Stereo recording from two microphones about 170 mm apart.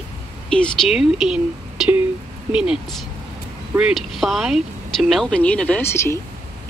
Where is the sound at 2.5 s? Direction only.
5° right (ahead or behind).